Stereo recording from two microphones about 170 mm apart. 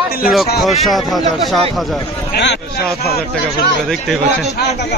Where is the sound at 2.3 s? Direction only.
80° left.